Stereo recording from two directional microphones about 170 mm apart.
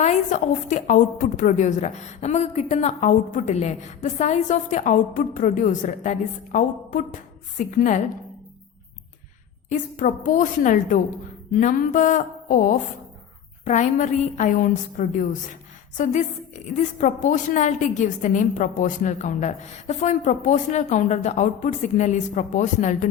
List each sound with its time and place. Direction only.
0.0 s a woman's voice: 45° left (ahead or behind)
9.6 s a woman's voice: 50° left (ahead or behind)